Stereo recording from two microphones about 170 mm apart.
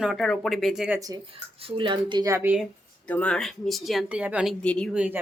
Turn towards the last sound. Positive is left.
turn(degrees=-10)  # may be behind; listen again after turning